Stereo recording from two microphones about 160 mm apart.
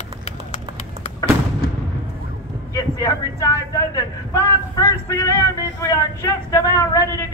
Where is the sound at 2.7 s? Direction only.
20° left (ahead or behind).